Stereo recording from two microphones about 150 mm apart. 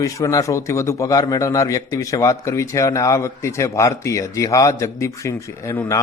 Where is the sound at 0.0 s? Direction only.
20° left (ahead or behind).